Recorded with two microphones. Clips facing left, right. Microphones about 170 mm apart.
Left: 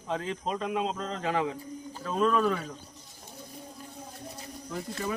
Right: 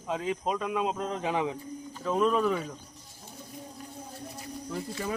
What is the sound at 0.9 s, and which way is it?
Speech, 15° right (ahead or behind).